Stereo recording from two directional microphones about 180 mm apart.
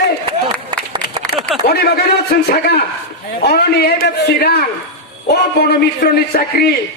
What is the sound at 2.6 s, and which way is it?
A man's voice, 60° left (ahead or behind).